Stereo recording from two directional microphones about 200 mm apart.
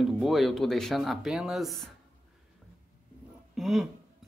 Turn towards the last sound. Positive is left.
turn(degrees=0)  # may be behind; listen again after turning